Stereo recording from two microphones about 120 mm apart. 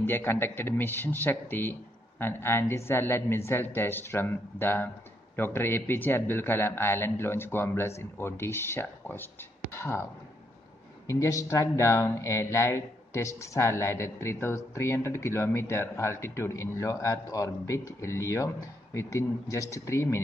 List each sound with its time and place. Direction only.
0.0 s speech: 20° left (ahead or behind)
11.1 s speech: 25° left (ahead or behind)